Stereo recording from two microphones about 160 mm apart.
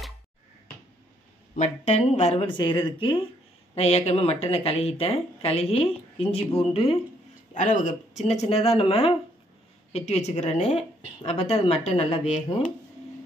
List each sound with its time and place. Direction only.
1.5 s speech: 50° left (ahead or behind)
7.5 s a woman's voice: 55° left (ahead or behind)